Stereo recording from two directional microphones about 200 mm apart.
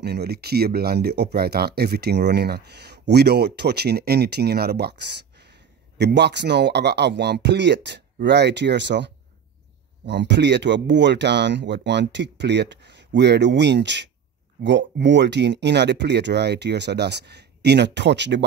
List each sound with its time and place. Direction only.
0.0 s speech: 55° right (ahead or behind)